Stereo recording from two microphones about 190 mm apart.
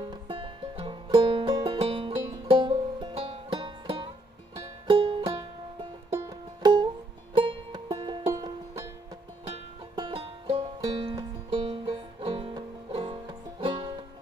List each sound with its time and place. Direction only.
0.0 s music: 25° right (ahead or behind)